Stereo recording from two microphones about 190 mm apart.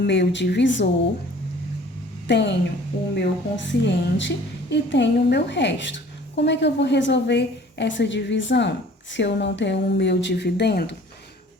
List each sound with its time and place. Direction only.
0.0 s a woman's voice: 65° left (ahead or behind)
2.2 s a woman's voice: 65° left (ahead or behind)